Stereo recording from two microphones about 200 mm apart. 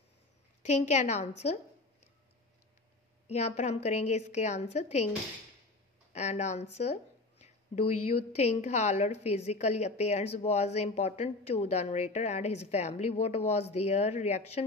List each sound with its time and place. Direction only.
0.6 s a woman's voice: 35° left (ahead or behind)
3.3 s a woman's voice: 35° left (ahead or behind)
6.1 s a woman's voice: 35° left (ahead or behind)
6.8 s a sound: 35° left (ahead or behind)
8.4 s a woman's voice: 35° left (ahead or behind)